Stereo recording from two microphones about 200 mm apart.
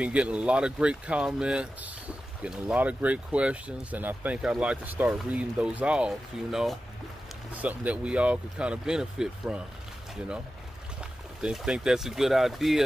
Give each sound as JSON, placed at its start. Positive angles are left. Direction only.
{"t": 0.0, "sound": "speech", "side_deg": -5}
{"t": 11.4, "sound": "speech", "side_deg": -5}